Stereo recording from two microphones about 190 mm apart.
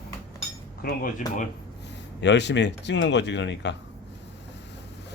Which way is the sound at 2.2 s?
65° left (ahead or behind).